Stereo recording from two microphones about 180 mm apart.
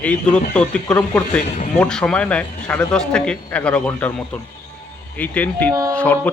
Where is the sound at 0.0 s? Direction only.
5° left (ahead or behind).